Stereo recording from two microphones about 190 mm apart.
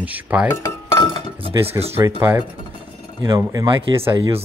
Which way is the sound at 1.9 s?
15° right (ahead or behind).